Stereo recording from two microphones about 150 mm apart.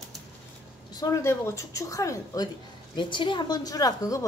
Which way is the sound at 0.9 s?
20° left (ahead or behind).